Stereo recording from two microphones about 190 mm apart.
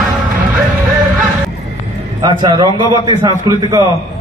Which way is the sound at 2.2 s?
25° right (ahead or behind).